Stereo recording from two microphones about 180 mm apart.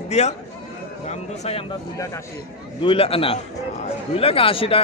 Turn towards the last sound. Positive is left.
turn(degrees=30)  # may be behind; listen again after turning